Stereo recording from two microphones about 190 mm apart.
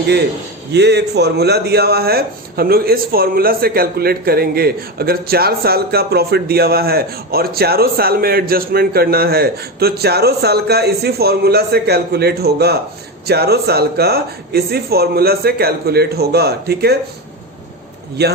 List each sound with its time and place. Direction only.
0.7 s speech: 60° right (ahead or behind)